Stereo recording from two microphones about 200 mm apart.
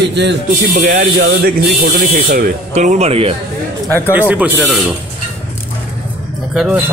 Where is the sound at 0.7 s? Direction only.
40° right (ahead or behind).